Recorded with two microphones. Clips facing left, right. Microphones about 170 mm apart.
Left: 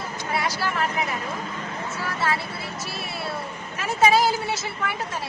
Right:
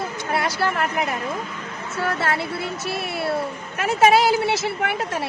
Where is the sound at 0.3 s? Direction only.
55° right (ahead or behind).